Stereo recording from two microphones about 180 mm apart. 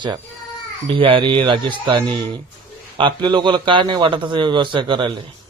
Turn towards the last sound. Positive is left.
turn(degrees=-25)  # may be behind; listen again after turning